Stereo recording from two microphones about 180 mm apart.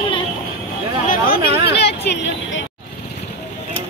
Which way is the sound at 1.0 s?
50° left (ahead or behind).